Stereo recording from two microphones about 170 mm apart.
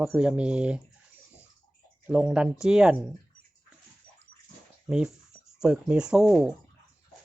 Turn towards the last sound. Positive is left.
turn(degrees=0)  # may be behind; listen again after turning